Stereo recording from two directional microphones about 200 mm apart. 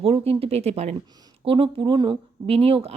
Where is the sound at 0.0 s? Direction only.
30° right (ahead or behind).